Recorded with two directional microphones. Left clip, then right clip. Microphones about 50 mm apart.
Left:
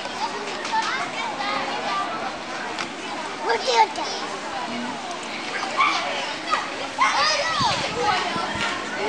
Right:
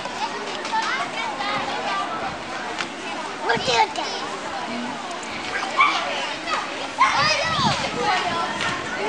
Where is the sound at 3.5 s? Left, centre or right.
Right.